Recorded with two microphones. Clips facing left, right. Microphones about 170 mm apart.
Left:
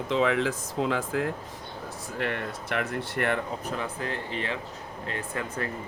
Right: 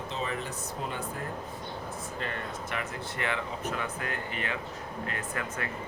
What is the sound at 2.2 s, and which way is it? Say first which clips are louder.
Speech: left 7 dB; 65° left (ahead or behind).